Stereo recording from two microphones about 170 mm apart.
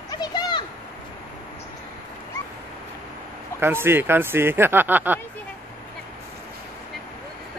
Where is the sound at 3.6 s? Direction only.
15° right (ahead or behind).